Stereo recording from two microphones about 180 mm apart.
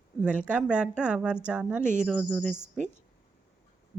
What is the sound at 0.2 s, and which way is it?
Speech, 5° right (ahead or behind).